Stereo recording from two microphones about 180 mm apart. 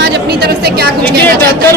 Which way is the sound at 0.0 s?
65° right (ahead or behind).